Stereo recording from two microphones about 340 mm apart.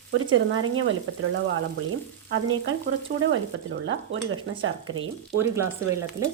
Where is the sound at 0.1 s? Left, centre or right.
Right.